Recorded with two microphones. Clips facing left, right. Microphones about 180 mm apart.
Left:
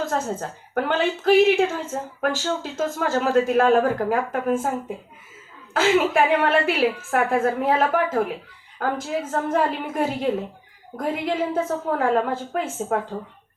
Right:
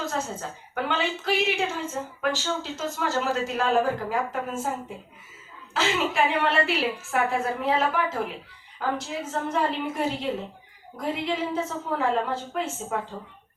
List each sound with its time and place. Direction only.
0.0 s speech: 50° left (ahead or behind)
5.7 s speech: 50° left (ahead or behind)